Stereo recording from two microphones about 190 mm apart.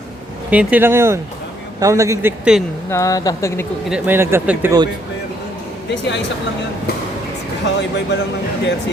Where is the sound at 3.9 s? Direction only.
10° right (ahead or behind).